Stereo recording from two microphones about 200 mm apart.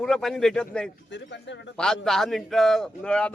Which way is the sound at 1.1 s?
60° left (ahead or behind).